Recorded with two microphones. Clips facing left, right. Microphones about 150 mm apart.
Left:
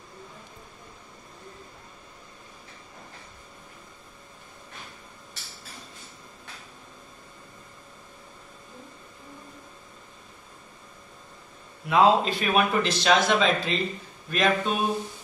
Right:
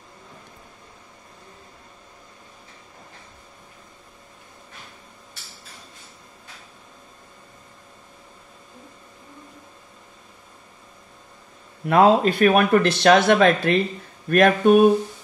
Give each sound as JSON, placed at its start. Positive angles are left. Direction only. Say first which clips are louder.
{"t": 11.8, "sound": "speech", "louder": "right 4 dB", "side_deg": -55}